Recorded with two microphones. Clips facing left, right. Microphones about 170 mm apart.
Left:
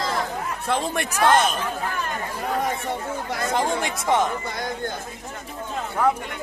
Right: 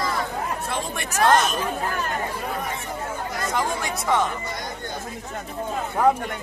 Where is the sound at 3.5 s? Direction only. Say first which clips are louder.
Left 3 dB; 25° left (ahead or behind).